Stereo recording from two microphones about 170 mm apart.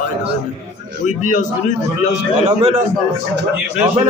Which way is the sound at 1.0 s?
45° left (ahead or behind).